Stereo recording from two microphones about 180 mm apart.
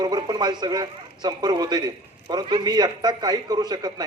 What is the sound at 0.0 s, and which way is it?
A man's voice, 20° right (ahead or behind).